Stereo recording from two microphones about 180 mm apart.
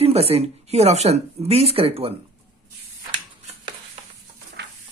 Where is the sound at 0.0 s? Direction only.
35° right (ahead or behind).